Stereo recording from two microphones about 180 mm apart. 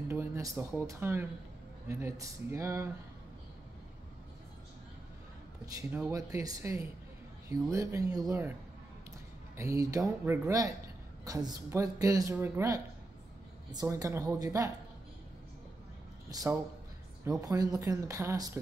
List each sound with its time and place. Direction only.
0.1 s a sound: 15° right (ahead or behind)
0.8 s speech: 15° right (ahead or behind)
5.9 s speech: 15° right (ahead or behind)
9.6 s a woman's voice: 20° right (ahead or behind)
16.3 s speech: 20° right (ahead or behind)